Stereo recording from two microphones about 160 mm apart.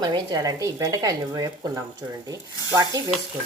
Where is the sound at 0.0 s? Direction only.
25° right (ahead or behind).